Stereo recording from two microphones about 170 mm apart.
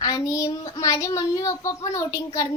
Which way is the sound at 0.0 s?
20° left (ahead or behind).